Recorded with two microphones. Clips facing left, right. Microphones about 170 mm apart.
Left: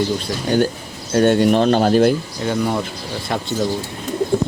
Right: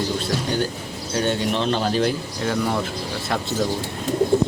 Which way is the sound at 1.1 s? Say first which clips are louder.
Left 9 dB; 50° left (ahead or behind).